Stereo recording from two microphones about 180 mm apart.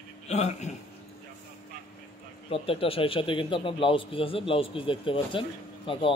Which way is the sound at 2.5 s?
30° left (ahead or behind).